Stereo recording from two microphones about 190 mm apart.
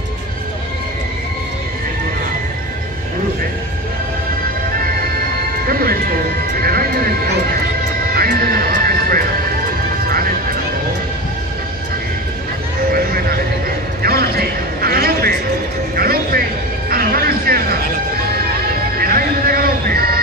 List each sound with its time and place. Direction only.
5.7 s music: 50° right (ahead or behind)
12.9 s a sound: 50° right (ahead or behind)
16.0 s music: 50° right (ahead or behind)
18.9 s music: 50° right (ahead or behind)